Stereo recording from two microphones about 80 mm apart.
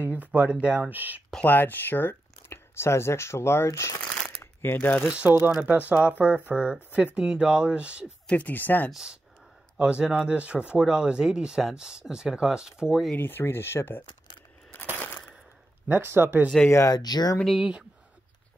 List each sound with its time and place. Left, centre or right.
0.0 s speech: right
1.4 s speech: left
5.1 s speech: right
8.3 s speech: left
8.9 s speech: centre
13.1 s speech: left
14.7 s crushing: left
15.9 s speech: right
16.9 s speech: left
17.6 s speech: centre